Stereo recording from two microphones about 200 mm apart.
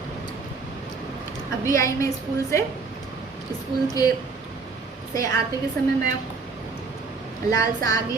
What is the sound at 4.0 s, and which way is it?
Speech, 20° left (ahead or behind).